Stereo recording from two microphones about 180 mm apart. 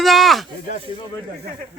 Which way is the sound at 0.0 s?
Centre (ahead or behind).